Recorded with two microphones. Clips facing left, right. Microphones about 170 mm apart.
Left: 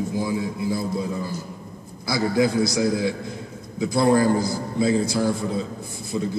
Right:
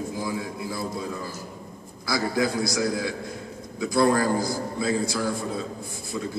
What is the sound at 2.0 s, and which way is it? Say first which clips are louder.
A man's voice: left 4 dB; 20° left (ahead or behind).